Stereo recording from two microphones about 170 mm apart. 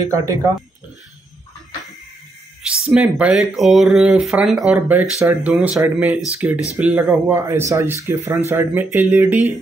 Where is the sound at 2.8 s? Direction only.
5° right (ahead or behind).